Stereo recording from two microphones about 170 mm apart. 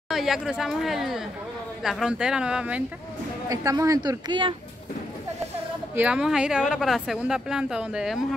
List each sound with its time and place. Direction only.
0.1 s a woman's voice: centre (ahead or behind)
3.4 s speech: 20° right (ahead or behind)
5.9 s a woman's voice: 5° right (ahead or behind)